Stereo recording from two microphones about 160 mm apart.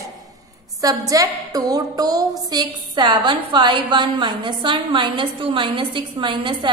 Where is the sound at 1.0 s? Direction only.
25° right (ahead or behind).